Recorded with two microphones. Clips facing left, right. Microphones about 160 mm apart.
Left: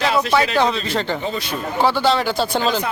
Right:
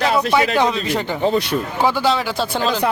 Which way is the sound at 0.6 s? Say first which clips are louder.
Right 1 dB; 15° right (ahead or behind).